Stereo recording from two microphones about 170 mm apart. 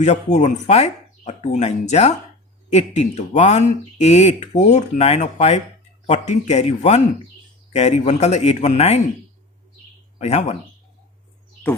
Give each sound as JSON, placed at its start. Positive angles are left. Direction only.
{"t": 0.0, "sound": "speech", "side_deg": 40}
{"t": 10.2, "sound": "speech", "side_deg": 40}